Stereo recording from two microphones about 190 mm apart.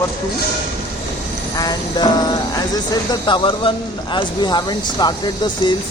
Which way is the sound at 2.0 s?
20° left (ahead or behind).